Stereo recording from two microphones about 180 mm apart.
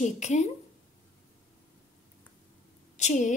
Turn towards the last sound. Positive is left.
turn(degrees=40)  # may be behind; listen again after turning